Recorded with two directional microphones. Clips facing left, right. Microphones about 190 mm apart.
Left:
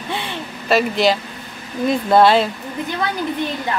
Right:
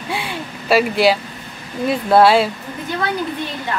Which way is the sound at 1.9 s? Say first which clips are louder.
Right 1 dB; 5° right (ahead or behind).